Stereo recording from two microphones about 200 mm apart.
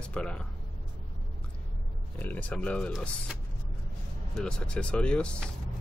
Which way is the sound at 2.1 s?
10° left (ahead or behind).